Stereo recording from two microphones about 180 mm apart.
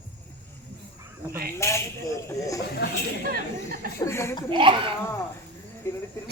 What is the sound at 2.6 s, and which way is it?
Speech, 70° left (ahead or behind).